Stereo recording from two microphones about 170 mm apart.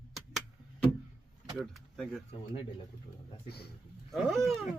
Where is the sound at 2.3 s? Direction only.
30° left (ahead or behind).